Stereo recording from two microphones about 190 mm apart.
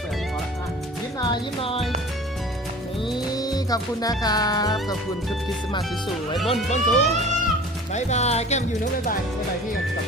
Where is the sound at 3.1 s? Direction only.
20° left (ahead or behind).